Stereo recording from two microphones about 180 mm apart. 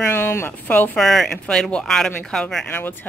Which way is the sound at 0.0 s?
15° left (ahead or behind).